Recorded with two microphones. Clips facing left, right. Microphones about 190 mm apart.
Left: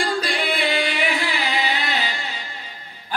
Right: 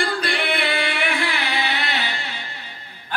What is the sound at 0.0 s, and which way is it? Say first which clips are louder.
Singing: even; 60° right (ahead or behind).